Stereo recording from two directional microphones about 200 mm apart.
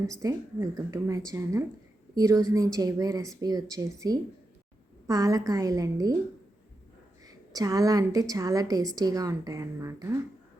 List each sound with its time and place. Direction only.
0.2 s a woman's voice: 15° right (ahead or behind)
7.3 s a woman's voice: 15° right (ahead or behind)